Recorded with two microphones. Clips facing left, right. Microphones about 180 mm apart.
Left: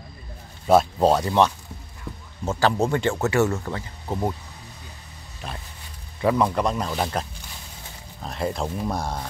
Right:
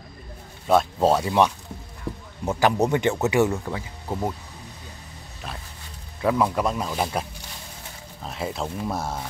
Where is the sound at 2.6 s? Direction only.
15° right (ahead or behind).